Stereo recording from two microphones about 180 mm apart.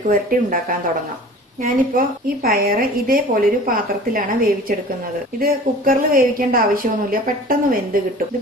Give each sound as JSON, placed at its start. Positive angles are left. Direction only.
{"t": 0.1, "sound": "a woman's voice", "side_deg": -50}